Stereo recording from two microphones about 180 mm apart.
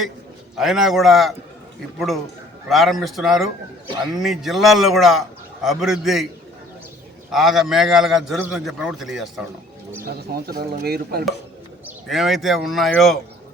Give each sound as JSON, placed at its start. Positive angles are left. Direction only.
{"t": 0.5, "sound": "a man's voice", "side_deg": 0}
{"t": 7.3, "sound": "a man's voice", "side_deg": 0}
{"t": 10.3, "sound": "speech", "side_deg": -60}
{"t": 11.9, "sound": "a man's voice", "side_deg": 0}